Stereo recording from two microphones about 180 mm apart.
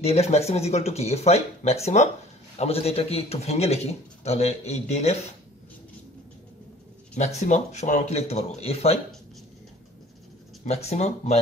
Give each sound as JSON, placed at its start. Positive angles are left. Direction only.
{"t": 0.0, "sound": "speech", "side_deg": 35}
{"t": 7.2, "sound": "speech", "side_deg": 40}
{"t": 10.6, "sound": "speech", "side_deg": 35}